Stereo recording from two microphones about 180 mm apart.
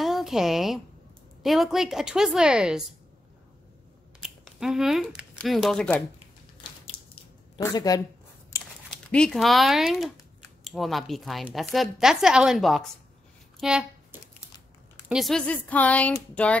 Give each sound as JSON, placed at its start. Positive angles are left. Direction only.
{"t": 0.0, "sound": "a woman's voice", "side_deg": 0}
{"t": 4.2, "sound": "speech", "side_deg": 0}
{"t": 6.9, "sound": "a sound", "side_deg": 60}
{"t": 7.6, "sound": "a woman's voice", "side_deg": 20}
{"t": 8.5, "sound": "crumpling", "side_deg": 15}
{"t": 8.9, "sound": "a woman's voice", "side_deg": 5}
{"t": 13.6, "sound": "a sound", "side_deg": -5}
{"t": 15.0, "sound": "a woman's voice", "side_deg": 0}